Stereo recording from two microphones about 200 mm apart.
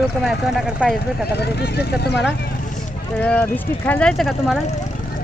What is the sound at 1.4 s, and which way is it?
Speech, 55° left (ahead or behind).